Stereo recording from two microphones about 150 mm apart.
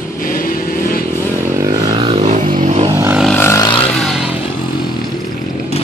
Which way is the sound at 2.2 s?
55° right (ahead or behind).